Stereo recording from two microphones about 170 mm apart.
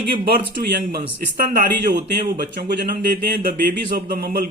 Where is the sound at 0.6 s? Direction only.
60° right (ahead or behind).